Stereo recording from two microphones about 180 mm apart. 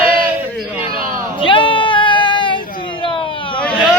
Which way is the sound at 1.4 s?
30° left (ahead or behind).